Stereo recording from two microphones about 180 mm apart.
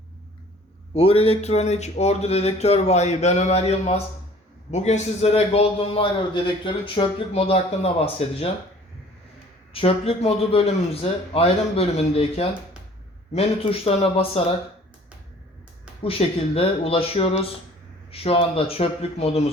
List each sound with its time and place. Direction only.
0.9 s a man's voice: 30° left (ahead or behind)
9.7 s a man's voice: 30° left (ahead or behind)
16.0 s a man's voice: 30° left (ahead or behind)